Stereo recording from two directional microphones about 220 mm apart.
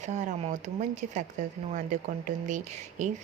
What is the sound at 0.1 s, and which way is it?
Speech, 35° right (ahead or behind).